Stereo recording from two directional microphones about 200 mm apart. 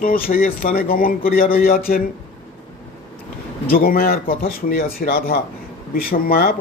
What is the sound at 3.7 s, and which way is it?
Speech, 45° left (ahead or behind).